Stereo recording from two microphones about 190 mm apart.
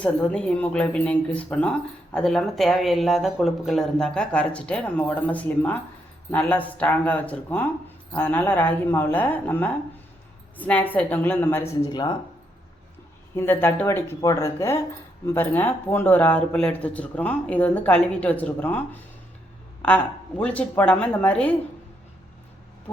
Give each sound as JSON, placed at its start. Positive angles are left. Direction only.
{"t": 0.0, "sound": "speech", "side_deg": 5}
{"t": 11.9, "sound": "speech", "side_deg": 20}
{"t": 13.3, "sound": "speech", "side_deg": 10}